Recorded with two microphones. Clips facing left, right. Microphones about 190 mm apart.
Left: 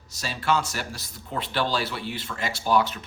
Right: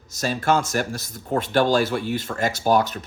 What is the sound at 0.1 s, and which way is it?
Speech, 45° right (ahead or behind).